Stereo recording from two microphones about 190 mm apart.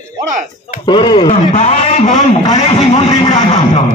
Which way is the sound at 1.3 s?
35° left (ahead or behind).